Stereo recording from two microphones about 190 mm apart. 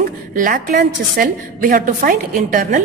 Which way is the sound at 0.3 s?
50° right (ahead or behind).